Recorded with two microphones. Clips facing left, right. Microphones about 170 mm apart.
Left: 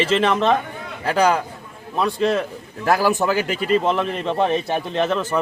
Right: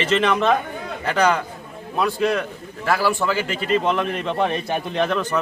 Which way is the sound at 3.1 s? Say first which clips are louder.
Left 2 dB; 40° left (ahead or behind).